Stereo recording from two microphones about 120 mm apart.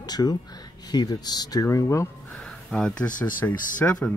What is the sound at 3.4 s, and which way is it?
Speech, 20° left (ahead or behind).